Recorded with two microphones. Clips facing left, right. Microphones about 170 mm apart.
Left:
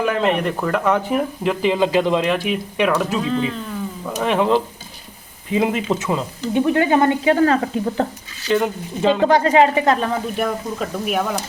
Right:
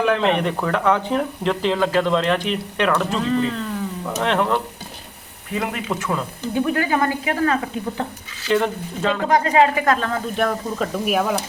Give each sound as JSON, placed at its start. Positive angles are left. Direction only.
{"t": 0.0, "sound": "speech", "side_deg": 5}
{"t": 8.4, "sound": "speech", "side_deg": 5}
{"t": 9.2, "sound": "speech", "side_deg": 30}
{"t": 10.3, "sound": "speech", "side_deg": 5}